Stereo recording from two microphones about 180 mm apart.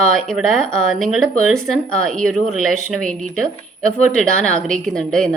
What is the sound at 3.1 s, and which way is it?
Speech, 45° right (ahead or behind).